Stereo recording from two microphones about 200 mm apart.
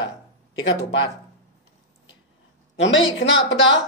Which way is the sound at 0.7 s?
60° left (ahead or behind).